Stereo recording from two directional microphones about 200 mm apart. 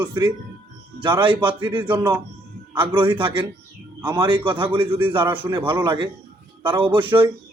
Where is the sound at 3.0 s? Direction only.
25° right (ahead or behind).